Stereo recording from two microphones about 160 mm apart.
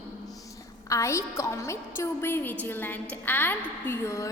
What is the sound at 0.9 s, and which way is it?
A woman's voice, 20° left (ahead or behind).